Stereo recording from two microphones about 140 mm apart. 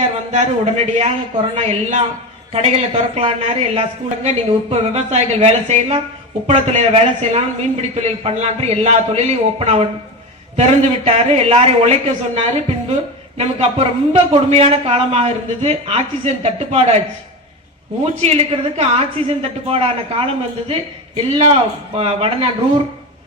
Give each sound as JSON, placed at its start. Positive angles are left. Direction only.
{"t": 0.3, "sound": "a man's voice", "side_deg": -55}
{"t": 18.0, "sound": "a man's voice", "side_deg": -50}